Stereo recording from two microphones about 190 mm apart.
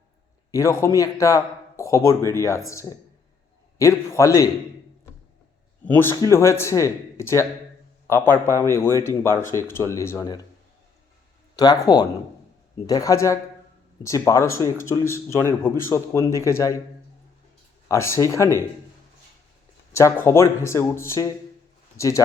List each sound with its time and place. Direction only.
0.5 s speech: 15° left (ahead or behind)
5.8 s speech: 10° left (ahead or behind)
11.5 s speech: 20° left (ahead or behind)
17.8 s speech: 15° left (ahead or behind)
19.9 s speech: 15° left (ahead or behind)